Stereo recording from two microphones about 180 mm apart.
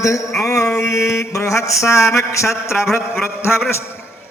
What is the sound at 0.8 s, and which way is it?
Mantra, 15° left (ahead or behind).